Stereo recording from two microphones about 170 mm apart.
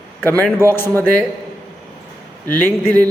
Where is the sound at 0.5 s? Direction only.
15° left (ahead or behind).